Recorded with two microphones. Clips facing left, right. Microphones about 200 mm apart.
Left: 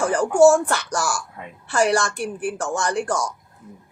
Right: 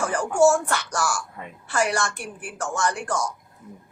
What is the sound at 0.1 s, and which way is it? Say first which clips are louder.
Speech: left 5 dB; 35° left (ahead or behind).